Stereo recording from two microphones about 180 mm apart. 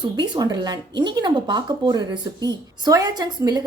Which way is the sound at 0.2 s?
20° right (ahead or behind).